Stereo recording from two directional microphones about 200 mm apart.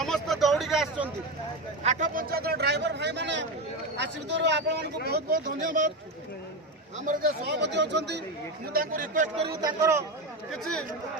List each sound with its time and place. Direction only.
0.0 s a sound: centre (ahead or behind)
1.8 s a sound: 35° right (ahead or behind); by 3.4 s 60° right (ahead or behind)
3.9 s speech: 60° right (ahead or behind)
5.0 s speech: 50° right (ahead or behind)
7.0 s speech: 45° right (ahead or behind); by 8.2 s 60° right (ahead or behind)
8.7 s a man's voice: 45° right (ahead or behind)
9.6 s a man's voice: 15° right (ahead or behind)